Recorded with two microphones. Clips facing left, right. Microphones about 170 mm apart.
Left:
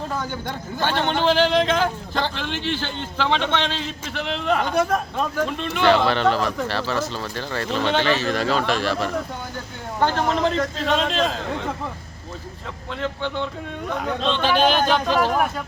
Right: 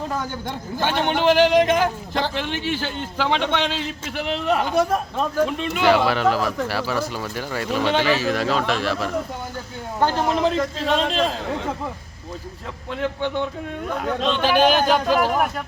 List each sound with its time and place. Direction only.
0.8 s a man's voice: 15° right (ahead or behind)
12.9 s a man's voice: 10° right (ahead or behind)